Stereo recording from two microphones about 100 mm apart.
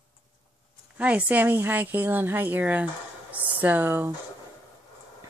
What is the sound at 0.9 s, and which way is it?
Speech, 15° right (ahead or behind).